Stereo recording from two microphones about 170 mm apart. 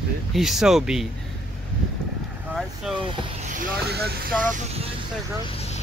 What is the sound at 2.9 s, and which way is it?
Speech, 30° right (ahead or behind).